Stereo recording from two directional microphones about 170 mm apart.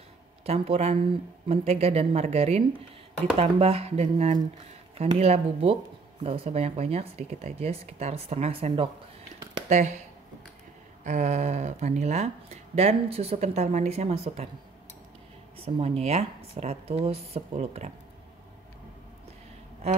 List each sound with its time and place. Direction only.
0.5 s speech: 40° right (ahead or behind)
9.7 s speech: 45° right (ahead or behind)
11.1 s speech: 45° right (ahead or behind)
15.5 s speech: 35° right (ahead or behind)